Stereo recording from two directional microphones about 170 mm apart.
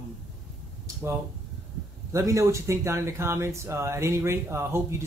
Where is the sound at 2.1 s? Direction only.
20° right (ahead or behind).